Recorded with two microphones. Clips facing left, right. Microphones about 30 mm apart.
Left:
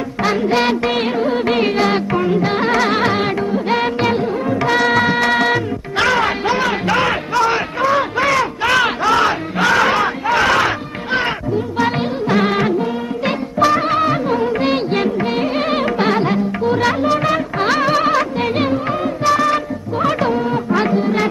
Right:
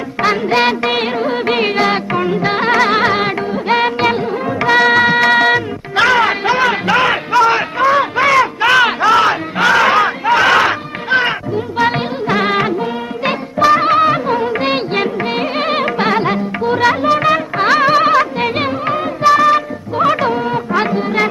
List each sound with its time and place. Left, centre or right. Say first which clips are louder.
0.2 s music: right 3 dB; centre